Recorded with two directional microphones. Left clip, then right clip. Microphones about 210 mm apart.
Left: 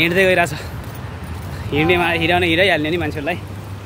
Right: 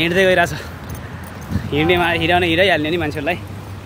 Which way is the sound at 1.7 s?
15° right (ahead or behind).